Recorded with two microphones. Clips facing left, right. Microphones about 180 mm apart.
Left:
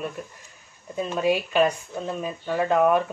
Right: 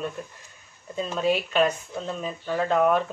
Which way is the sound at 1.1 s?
15° left (ahead or behind).